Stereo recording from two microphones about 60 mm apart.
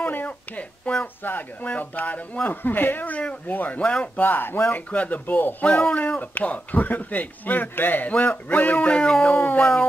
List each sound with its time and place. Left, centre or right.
0.0 s a sound: left
1.2 s a man's voice: left
4.6 s a man's voice: left
8.1 s a man's voice: centre
8.5 s speech: left
9.3 s a man's voice: left